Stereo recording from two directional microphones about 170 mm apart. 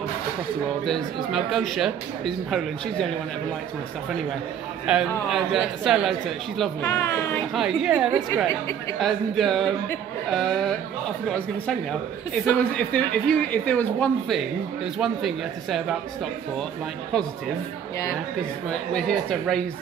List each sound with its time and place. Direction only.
0.8 s speech: centre (ahead or behind)
4.9 s speech: 5° right (ahead or behind)
6.9 s speech: 15° left (ahead or behind)
7.5 s speech: 5° right (ahead or behind)
18.7 s speech: 5° left (ahead or behind)